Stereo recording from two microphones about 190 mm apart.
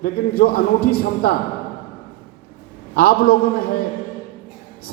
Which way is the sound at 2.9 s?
50° left (ahead or behind).